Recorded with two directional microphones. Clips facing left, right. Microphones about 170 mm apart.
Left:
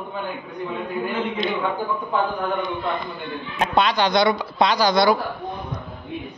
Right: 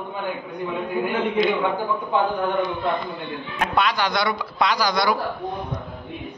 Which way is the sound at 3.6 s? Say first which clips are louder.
Left 3 dB; 25° left (ahead or behind).